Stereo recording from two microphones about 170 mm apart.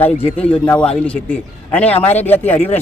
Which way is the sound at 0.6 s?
5° left (ahead or behind).